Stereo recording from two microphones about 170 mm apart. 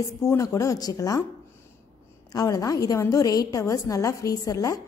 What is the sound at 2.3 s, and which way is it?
A woman's voice, 20° left (ahead or behind).